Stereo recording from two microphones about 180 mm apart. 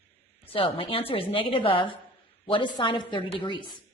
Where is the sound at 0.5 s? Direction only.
30° left (ahead or behind).